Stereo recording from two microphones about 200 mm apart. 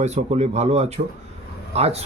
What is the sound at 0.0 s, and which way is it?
Speech, 35° right (ahead or behind).